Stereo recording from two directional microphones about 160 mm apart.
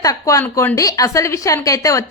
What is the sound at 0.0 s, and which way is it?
A woman's voice, 20° left (ahead or behind).